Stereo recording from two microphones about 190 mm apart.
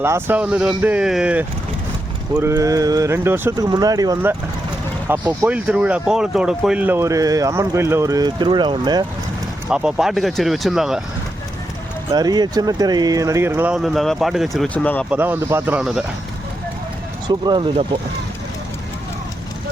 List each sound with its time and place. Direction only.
0.0 s speech: 10° right (ahead or behind)
9.6 s speech: 5° right (ahead or behind)
12.1 s speech: 20° right (ahead or behind); by 15.0 s 10° left (ahead or behind)
15.1 s speech: 10° right (ahead or behind)
17.2 s speech: 20° right (ahead or behind)